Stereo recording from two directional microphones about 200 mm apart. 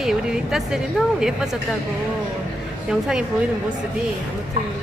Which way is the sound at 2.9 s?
5° right (ahead or behind).